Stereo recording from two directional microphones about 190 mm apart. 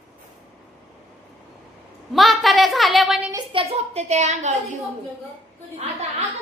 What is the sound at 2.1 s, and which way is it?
A woman's voice, centre (ahead or behind).